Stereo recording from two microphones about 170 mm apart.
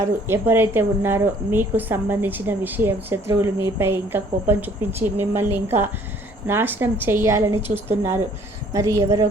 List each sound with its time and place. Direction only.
0.0 s a woman's voice: 15° right (ahead or behind)